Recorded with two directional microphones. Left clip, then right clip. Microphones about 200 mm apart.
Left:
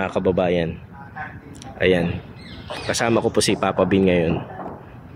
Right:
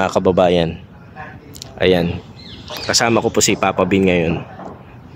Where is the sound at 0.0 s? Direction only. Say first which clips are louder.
Right 6 dB; 20° right (ahead or behind).